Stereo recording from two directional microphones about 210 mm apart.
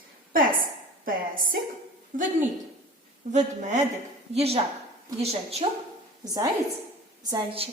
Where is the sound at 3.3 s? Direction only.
35° right (ahead or behind).